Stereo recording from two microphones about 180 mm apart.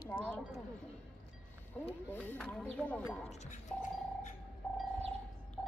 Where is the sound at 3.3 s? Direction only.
40° left (ahead or behind).